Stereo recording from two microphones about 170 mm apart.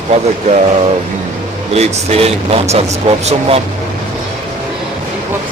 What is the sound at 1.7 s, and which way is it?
Speech, 35° right (ahead or behind).